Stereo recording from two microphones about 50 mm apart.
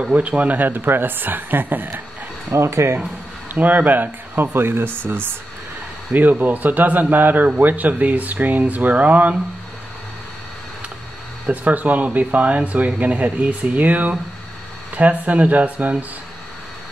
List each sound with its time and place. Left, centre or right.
0.0 s speech: right
2.5 s speech: right
3.5 s speech: right
6.4 s speech: right
11.5 s speech: right